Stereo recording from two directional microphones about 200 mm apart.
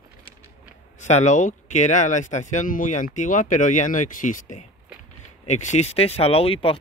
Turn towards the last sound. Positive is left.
turn(degrees=30)  # may be behind; listen again after turning